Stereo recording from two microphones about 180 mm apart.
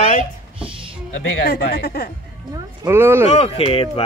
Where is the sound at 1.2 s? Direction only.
65° left (ahead or behind).